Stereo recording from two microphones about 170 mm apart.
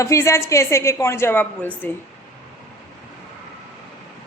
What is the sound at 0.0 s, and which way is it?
A woman's voice, 15° left (ahead or behind).